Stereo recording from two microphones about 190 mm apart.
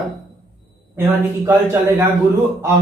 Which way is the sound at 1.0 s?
10° right (ahead or behind).